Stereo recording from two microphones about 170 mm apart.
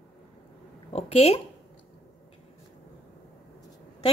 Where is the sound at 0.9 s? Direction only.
35° left (ahead or behind).